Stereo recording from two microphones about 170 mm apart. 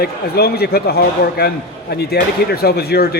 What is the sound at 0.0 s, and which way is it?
A man's voice, 65° left (ahead or behind).